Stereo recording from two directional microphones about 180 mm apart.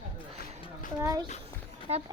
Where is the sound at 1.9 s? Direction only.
35° right (ahead or behind).